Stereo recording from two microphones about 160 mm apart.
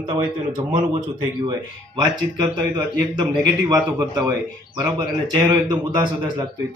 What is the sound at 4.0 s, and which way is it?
Speech, 20° right (ahead or behind).